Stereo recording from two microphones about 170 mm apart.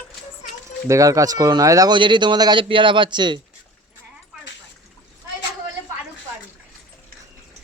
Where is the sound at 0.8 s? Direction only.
20° right (ahead or behind).